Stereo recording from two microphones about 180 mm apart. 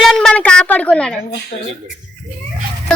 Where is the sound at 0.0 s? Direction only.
Centre (ahead or behind).